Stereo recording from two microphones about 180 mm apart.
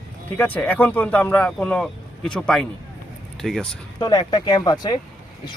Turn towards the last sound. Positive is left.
turn(degrees=20)  # may be behind; listen again after turning